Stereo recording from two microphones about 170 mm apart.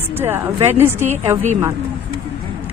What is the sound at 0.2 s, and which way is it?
Speech, 15° right (ahead or behind).